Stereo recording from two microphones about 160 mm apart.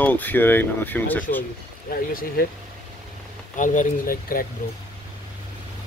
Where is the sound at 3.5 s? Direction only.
55° left (ahead or behind).